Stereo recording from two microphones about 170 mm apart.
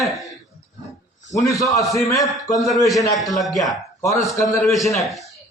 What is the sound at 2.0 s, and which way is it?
Speech, 20° left (ahead or behind).